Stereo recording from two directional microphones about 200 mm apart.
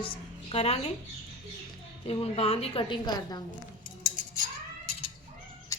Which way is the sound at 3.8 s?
40° left (ahead or behind).